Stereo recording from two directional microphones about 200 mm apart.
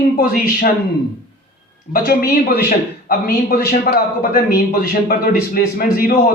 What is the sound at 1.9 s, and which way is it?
A man's voice, 50° left (ahead or behind).